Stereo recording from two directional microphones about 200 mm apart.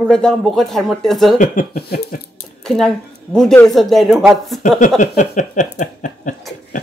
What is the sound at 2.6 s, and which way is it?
Speech, centre (ahead or behind).